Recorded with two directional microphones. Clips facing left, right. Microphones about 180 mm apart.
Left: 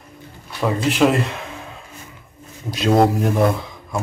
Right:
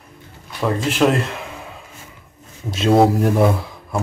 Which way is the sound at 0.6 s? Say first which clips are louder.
Left 1 dB; centre (ahead or behind).